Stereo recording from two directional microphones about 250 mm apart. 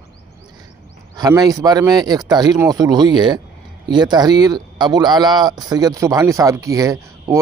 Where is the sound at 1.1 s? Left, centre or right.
Centre.